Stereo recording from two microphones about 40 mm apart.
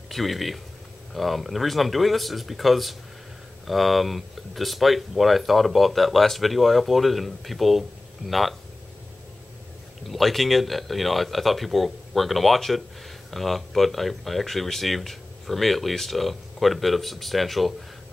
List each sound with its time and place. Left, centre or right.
0.1 s speech: centre
10.0 s speech: centre